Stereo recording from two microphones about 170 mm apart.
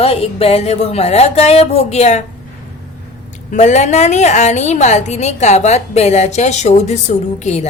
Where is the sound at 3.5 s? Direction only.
40° left (ahead or behind).